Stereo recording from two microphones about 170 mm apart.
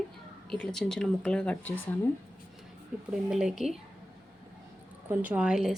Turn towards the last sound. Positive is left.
turn(degrees=-5)  # may be behind; listen again after turning